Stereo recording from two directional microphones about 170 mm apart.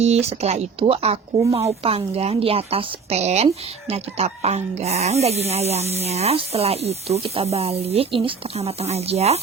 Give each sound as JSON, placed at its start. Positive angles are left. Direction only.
{"t": 0.0, "sound": "a woman's voice", "side_deg": -40}